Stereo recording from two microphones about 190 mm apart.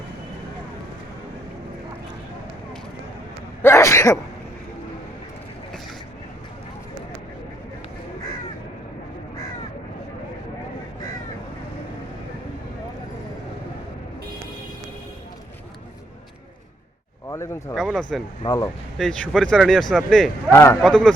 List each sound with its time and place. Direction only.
3.6 s sneeze: 15° left (ahead or behind)
17.2 s a sound: 15° left (ahead or behind)
17.7 s a sound: centre (ahead or behind)
18.4 s speech: 20° left (ahead or behind)
18.9 s speech: 5° left (ahead or behind)
20.5 s a man's voice: 15° left (ahead or behind)
20.8 s speech: 5° left (ahead or behind)